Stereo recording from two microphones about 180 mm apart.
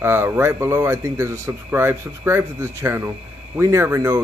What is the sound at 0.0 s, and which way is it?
Speech, 10° right (ahead or behind).